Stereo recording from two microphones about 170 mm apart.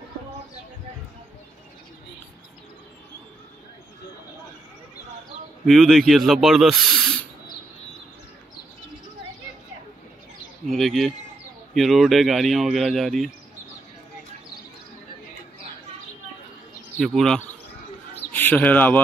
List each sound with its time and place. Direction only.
5.7 s speech: centre (ahead or behind)
10.7 s speech: centre (ahead or behind)
17.0 s speech: centre (ahead or behind)